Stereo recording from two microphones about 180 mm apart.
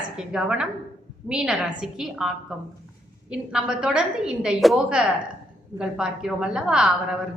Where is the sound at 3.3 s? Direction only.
5° right (ahead or behind).